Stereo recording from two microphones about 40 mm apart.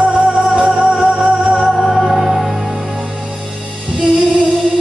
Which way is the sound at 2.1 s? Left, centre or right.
Centre.